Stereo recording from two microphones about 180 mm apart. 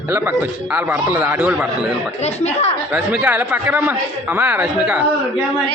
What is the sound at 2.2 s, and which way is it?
Speech, 35° left (ahead or behind).